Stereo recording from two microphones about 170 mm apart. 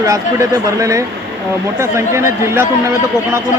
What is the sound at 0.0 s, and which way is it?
Speech, 20° right (ahead or behind).